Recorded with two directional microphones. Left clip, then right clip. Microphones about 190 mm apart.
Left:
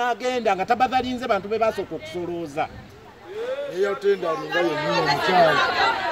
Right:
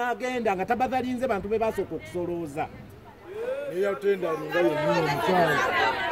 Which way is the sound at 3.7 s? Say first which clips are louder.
Left 4 dB; 10° right (ahead or behind).